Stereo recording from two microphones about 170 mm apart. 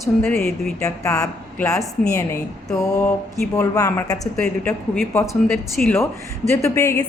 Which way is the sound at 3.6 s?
15° left (ahead or behind).